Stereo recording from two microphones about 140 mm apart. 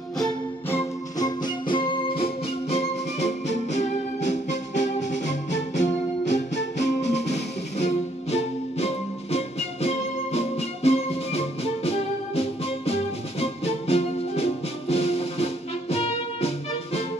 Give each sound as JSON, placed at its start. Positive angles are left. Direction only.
{"t": 1.1, "sound": "music", "side_deg": 30}